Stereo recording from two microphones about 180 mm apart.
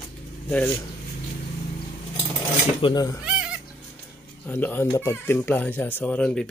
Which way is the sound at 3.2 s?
5° right (ahead or behind).